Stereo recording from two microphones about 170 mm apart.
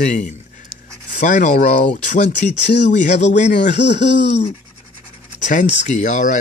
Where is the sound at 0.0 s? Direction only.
45° left (ahead or behind).